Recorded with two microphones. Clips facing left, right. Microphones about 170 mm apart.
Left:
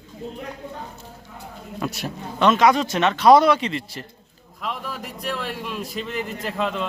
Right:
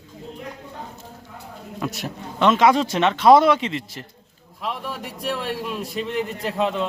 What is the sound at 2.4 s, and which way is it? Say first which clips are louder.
Speech: even; 25° right (ahead or behind).